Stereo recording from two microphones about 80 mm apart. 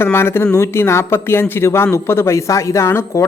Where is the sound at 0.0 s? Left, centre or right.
Left.